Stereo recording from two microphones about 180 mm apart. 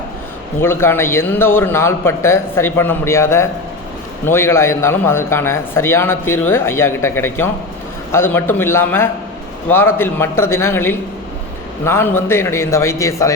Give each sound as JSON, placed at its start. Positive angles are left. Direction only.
{"t": 0.6, "sound": "a man's voice", "side_deg": 15}